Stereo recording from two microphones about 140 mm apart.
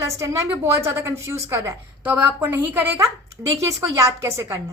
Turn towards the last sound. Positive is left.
turn(degrees=-20)  # may be behind; listen again after turning